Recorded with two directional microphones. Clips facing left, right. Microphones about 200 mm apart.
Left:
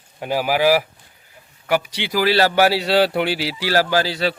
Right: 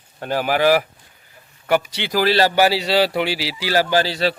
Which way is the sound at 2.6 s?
Centre (ahead or behind).